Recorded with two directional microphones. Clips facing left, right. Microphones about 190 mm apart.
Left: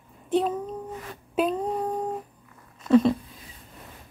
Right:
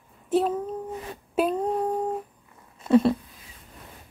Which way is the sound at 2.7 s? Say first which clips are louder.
Left 1 dB; 30° right (ahead or behind).